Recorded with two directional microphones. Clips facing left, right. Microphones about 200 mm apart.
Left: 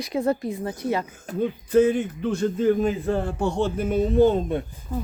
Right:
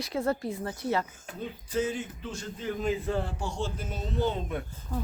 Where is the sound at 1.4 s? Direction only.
55° left (ahead or behind).